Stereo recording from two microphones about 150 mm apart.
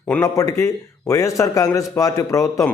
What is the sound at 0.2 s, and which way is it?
A man's voice, 25° left (ahead or behind).